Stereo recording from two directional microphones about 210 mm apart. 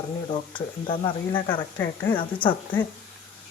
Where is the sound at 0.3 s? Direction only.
25° left (ahead or behind).